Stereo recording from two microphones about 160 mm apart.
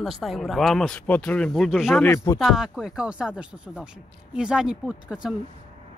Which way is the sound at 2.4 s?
5° right (ahead or behind).